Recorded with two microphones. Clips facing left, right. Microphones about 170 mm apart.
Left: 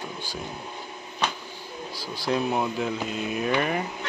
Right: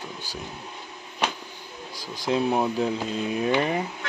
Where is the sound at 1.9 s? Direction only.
20° right (ahead or behind).